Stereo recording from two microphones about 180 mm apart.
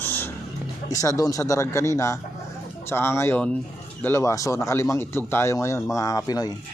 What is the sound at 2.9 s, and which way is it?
Speech, 15° left (ahead or behind).